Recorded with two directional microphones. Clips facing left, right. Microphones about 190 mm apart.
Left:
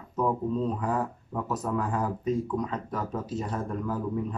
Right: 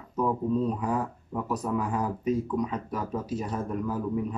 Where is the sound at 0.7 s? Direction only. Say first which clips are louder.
Even; 10° right (ahead or behind).